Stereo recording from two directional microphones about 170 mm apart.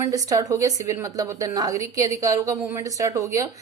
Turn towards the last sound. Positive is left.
turn(degrees=-20)  # may be behind; listen again after turning